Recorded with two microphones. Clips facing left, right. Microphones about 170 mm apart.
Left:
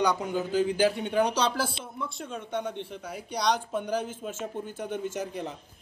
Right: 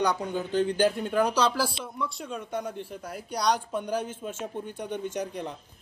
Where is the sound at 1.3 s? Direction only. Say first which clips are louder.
Right 2 dB; 55° left (ahead or behind).